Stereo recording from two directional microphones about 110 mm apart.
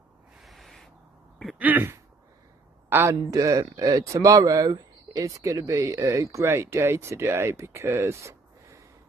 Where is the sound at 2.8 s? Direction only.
20° right (ahead or behind).